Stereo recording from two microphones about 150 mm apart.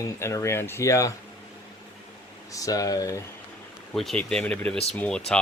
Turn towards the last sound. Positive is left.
turn(degrees=5)  # may be behind; listen again after turning